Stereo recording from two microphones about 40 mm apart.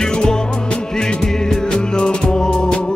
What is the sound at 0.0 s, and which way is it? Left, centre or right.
Music, centre.